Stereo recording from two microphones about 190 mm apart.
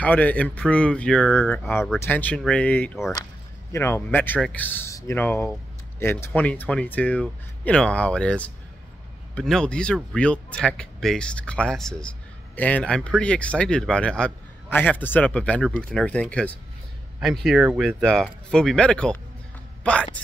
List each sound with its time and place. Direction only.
0.0 s a man's voice: 10° left (ahead or behind)